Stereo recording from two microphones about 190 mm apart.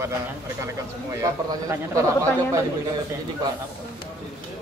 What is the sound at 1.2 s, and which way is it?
Speech, 15° right (ahead or behind).